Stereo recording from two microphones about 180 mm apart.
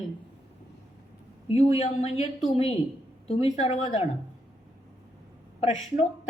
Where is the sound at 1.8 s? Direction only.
35° left (ahead or behind).